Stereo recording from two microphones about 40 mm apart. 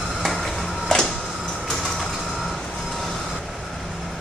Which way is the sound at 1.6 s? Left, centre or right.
Centre.